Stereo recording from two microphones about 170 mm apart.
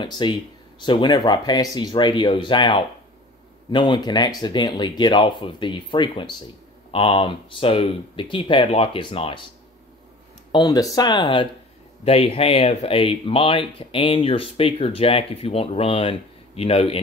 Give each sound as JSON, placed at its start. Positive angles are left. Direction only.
{"t": 0.0, "sound": "speech", "side_deg": 25}
{"t": 10.5, "sound": "speech", "side_deg": 20}